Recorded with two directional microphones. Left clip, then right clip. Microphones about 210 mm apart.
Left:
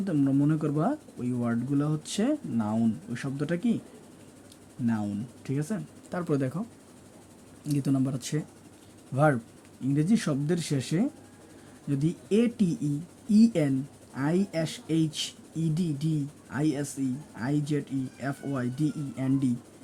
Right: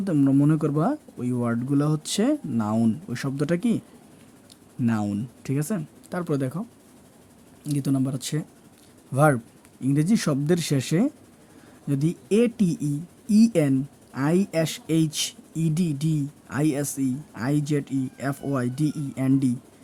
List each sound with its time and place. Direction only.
0.0 s speech: 20° right (ahead or behind)
4.9 s speech: 25° right (ahead or behind)